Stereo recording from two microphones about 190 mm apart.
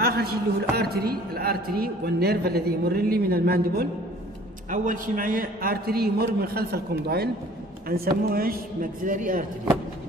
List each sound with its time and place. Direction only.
0.0 s a woman's voice: 55° right (ahead or behind)
4.6 s a man's voice: 45° right (ahead or behind)